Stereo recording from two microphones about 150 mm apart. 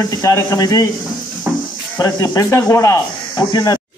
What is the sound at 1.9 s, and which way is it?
Speech, 25° left (ahead or behind).